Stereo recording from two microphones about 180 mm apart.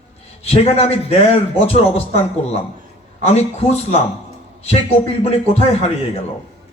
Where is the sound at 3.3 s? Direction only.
35° left (ahead or behind).